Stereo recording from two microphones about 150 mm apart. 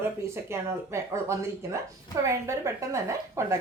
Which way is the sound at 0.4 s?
20° right (ahead or behind).